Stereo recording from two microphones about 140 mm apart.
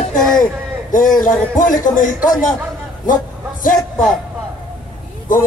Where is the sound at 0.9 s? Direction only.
70° left (ahead or behind).